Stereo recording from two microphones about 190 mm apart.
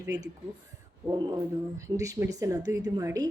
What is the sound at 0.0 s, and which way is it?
Speech, 20° right (ahead or behind).